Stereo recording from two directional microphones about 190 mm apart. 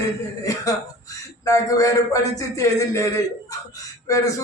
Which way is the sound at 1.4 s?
15° left (ahead or behind).